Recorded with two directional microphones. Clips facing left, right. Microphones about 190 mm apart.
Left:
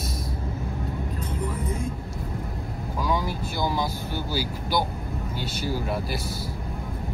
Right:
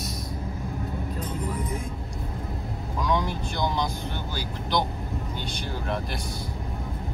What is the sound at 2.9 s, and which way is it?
Vehicle, 5° left (ahead or behind).